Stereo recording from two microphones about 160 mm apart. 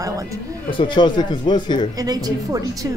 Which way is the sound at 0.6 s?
30° left (ahead or behind).